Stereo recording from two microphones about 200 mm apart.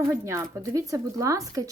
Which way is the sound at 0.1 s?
15° right (ahead or behind).